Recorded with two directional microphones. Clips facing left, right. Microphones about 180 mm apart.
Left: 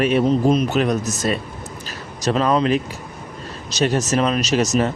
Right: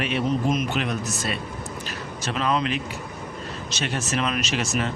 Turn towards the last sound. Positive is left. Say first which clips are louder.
# left 8 dB
turn(degrees=40)  # may be behind; listen again after turning